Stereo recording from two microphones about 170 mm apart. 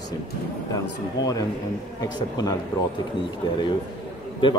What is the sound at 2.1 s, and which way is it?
Speech, 20° left (ahead or behind).